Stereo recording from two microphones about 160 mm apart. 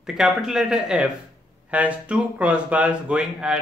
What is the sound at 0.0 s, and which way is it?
Speech, 5° right (ahead or behind).